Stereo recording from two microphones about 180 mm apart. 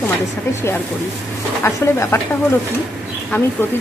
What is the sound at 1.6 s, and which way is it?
Speech, 15° left (ahead or behind).